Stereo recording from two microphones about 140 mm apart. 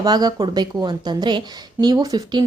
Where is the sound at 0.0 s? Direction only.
30° right (ahead or behind).